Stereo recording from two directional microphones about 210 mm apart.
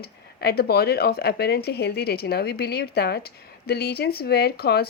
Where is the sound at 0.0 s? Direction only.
50° left (ahead or behind).